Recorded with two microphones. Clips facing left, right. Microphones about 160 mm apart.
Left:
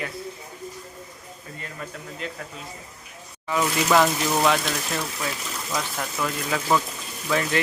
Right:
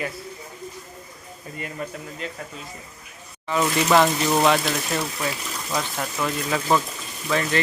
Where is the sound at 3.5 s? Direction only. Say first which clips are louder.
Right 2 dB; centre (ahead or behind).